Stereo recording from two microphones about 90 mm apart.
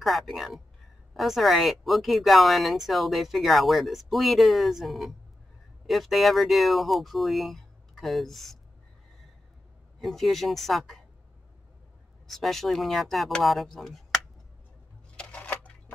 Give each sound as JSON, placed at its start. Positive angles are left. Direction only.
{"t": 0.0, "sound": "speech", "side_deg": 0}
{"t": 9.9, "sound": "speech", "side_deg": 0}
{"t": 12.3, "sound": "speech", "side_deg": 5}
{"t": 15.1, "sound": "a sound", "side_deg": 15}